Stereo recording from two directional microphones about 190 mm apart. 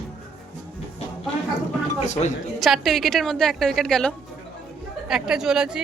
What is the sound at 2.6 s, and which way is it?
A woman's voice, centre (ahead or behind).